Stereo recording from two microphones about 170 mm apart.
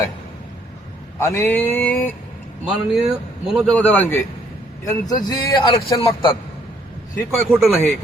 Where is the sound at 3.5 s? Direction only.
5° left (ahead or behind).